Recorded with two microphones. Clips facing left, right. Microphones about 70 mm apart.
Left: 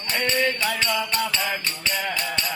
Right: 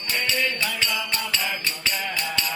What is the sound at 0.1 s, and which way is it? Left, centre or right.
Music, left.